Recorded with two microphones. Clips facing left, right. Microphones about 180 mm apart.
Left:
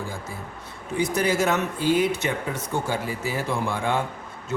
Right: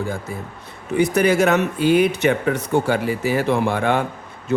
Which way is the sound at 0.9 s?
65° right (ahead or behind).